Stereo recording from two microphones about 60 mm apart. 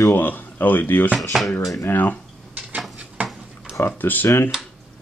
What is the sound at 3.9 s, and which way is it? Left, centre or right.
Speech, left.